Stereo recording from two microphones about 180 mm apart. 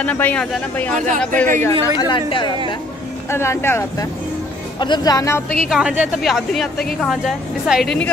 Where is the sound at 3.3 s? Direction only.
15° left (ahead or behind).